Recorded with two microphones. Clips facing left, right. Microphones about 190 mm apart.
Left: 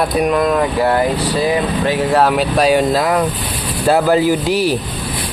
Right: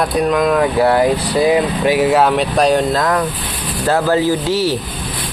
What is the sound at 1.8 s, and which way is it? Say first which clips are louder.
Speech: right 3 dB; 10° right (ahead or behind).